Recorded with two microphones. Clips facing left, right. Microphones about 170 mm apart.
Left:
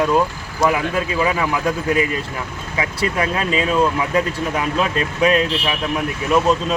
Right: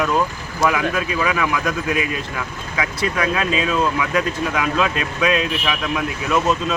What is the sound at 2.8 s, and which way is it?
Speech, 30° left (ahead or behind).